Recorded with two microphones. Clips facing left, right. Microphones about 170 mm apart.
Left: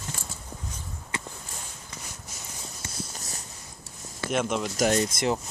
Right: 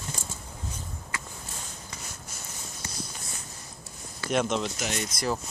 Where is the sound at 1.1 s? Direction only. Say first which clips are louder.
Left 4 dB; 25° left (ahead or behind).